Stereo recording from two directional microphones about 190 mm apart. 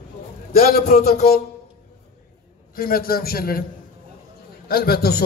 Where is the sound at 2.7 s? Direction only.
50° left (ahead or behind).